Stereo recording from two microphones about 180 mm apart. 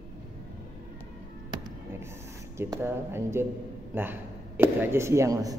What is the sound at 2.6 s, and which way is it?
A man's voice, 15° right (ahead or behind).